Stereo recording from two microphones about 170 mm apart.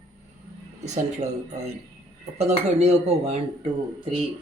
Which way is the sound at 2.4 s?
40° right (ahead or behind).